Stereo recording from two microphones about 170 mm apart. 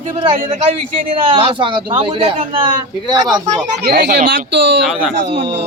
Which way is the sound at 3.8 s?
70° right (ahead or behind).